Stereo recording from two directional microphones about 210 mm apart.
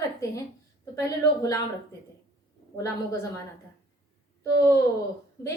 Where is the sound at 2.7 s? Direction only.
15° left (ahead or behind).